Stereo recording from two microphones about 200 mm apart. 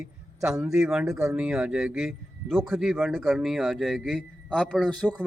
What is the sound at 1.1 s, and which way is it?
A man's voice, 15° right (ahead or behind).